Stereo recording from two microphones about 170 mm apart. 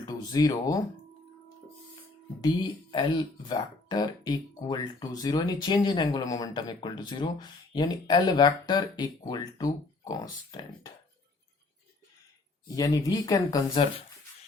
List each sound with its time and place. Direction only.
0.0 s speech: 20° left (ahead or behind)
2.9 s speech: 25° left (ahead or behind)
12.6 s speech: 20° left (ahead or behind)